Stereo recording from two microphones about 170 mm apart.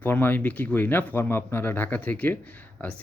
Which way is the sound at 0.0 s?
10° left (ahead or behind).